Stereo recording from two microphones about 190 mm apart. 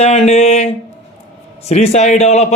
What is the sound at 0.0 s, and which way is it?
A man's voice, 35° left (ahead or behind).